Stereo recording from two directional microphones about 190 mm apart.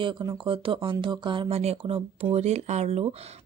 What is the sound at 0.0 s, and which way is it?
Speech, 25° right (ahead or behind).